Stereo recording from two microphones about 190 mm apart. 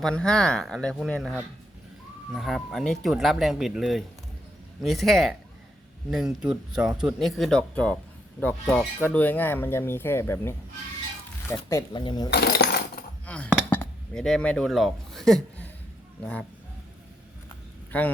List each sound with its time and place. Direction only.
0.0 s speech: 5° left (ahead or behind)
11.5 s speech: 20° left (ahead or behind)
12.3 s coin: 60° left (ahead or behind)
13.2 s chink: 5° left (ahead or behind)
13.7 s speech: 5° left (ahead or behind)
17.9 s speech: 5° left (ahead or behind)